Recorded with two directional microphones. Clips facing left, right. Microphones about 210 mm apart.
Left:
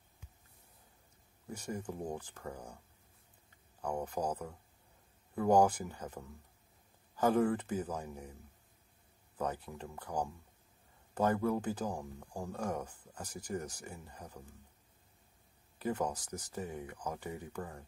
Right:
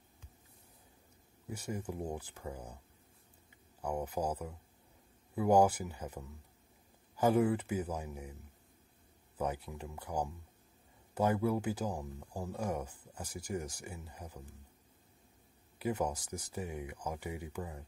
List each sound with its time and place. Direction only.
1.5 s speech: 10° right (ahead or behind)
3.8 s speech: 10° right (ahead or behind)
9.4 s speech: 10° right (ahead or behind)
15.8 s speech: 10° right (ahead or behind)